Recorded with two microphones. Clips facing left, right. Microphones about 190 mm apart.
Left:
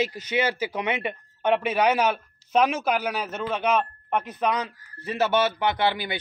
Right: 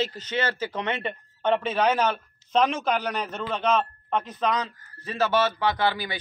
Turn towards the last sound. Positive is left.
turn(degrees=20)  # may be behind; listen again after turning